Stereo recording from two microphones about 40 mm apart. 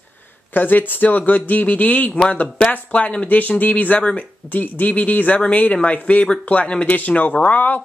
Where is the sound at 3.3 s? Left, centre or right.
Left.